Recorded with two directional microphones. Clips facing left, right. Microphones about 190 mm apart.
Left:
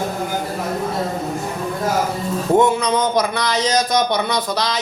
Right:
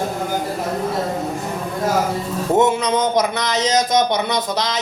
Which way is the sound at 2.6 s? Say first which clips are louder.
Even; 20° right (ahead or behind).